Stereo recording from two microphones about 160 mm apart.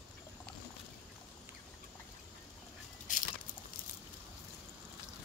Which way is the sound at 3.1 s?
55° left (ahead or behind).